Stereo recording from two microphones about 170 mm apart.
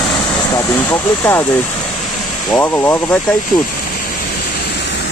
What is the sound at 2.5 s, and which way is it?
Speech, 10° left (ahead or behind).